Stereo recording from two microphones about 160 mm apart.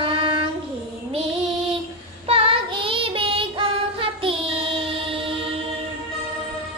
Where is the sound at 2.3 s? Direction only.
35° right (ahead or behind).